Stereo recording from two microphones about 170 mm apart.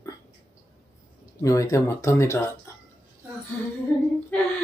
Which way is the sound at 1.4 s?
20° left (ahead or behind).